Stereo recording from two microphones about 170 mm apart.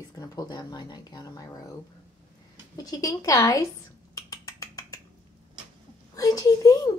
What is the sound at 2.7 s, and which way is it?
Speech, 20° left (ahead or behind).